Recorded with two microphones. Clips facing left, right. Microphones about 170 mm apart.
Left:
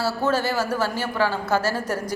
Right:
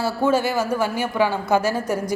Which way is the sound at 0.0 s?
10° right (ahead or behind).